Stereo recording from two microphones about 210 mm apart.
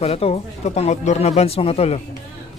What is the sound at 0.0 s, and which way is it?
A man's voice, 30° left (ahead or behind).